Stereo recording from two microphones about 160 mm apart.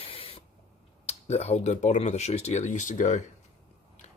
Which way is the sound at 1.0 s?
40° left (ahead or behind).